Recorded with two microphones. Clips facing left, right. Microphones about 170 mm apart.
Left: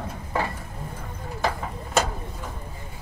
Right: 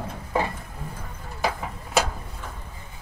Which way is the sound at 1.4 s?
5° right (ahead or behind).